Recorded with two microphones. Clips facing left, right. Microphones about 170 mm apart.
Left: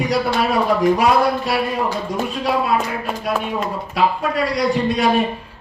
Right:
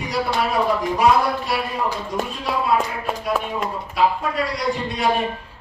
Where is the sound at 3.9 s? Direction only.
80° left.